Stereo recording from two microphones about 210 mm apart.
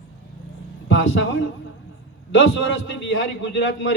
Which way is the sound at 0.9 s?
60° left (ahead or behind).